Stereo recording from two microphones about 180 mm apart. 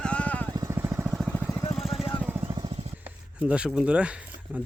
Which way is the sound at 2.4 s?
25° right (ahead or behind).